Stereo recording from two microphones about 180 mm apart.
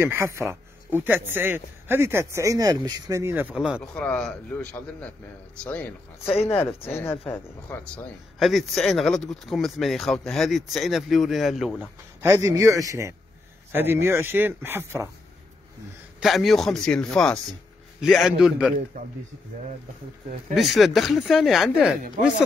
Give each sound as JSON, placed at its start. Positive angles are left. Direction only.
{"t": 0.0, "sound": "speech", "side_deg": -15}
{"t": 3.8, "sound": "a man's voice", "side_deg": 5}
{"t": 11.8, "sound": "speech", "side_deg": -15}
{"t": 16.2, "sound": "speech", "side_deg": 0}
{"t": 20.5, "sound": "speech", "side_deg": 0}